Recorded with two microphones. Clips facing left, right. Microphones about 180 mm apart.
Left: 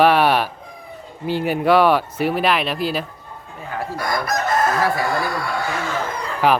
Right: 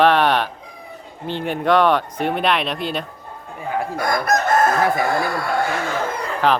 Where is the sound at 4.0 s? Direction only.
50° right (ahead or behind).